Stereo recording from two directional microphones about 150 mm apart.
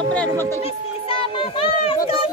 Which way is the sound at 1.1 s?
35° left (ahead or behind).